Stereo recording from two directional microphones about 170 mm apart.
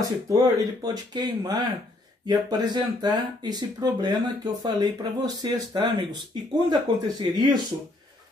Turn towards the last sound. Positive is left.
turn(degrees=-25)  # may be behind; listen again after turning